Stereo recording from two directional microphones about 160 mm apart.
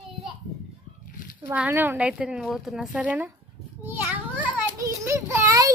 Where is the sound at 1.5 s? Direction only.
10° right (ahead or behind).